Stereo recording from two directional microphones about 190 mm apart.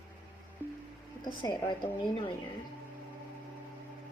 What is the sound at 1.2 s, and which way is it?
Speech, 20° left (ahead or behind).